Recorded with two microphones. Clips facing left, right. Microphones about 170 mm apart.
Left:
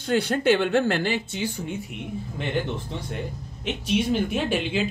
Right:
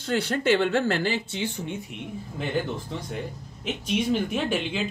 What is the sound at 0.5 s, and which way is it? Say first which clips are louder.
Speech: left 1 dB; 60° left (ahead or behind).